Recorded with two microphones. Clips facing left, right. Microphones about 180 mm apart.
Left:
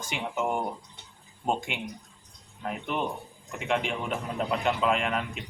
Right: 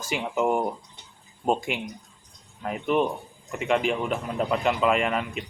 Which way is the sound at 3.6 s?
Centre (ahead or behind).